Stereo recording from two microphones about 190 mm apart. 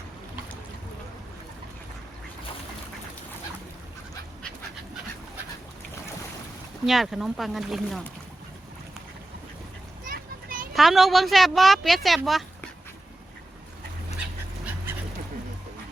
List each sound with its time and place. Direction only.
6.8 s speech: centre (ahead or behind)
10.1 s vehicle: 45° right (ahead or behind)
10.8 s speech: centre (ahead or behind)